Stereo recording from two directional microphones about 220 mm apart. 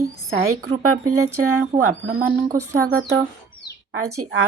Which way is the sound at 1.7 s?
35° right (ahead or behind).